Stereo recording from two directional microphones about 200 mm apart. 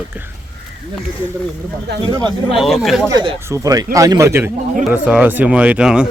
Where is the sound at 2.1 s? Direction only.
20° right (ahead or behind).